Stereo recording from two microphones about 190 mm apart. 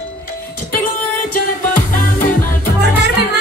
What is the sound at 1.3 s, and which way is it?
Music, 45° left (ahead or behind).